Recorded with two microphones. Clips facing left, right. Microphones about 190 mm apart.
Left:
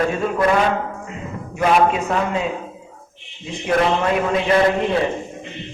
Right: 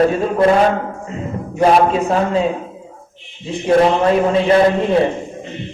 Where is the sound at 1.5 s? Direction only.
35° right (ahead or behind).